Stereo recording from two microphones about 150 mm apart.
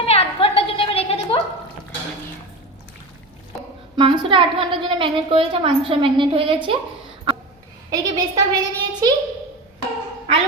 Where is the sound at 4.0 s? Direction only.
35° right (ahead or behind).